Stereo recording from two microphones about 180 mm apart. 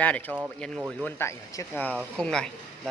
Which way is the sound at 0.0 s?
10° left (ahead or behind).